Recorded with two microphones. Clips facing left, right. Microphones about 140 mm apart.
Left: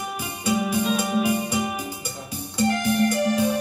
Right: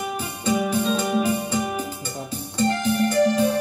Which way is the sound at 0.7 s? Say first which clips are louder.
Right 1 dB; 10° left (ahead or behind).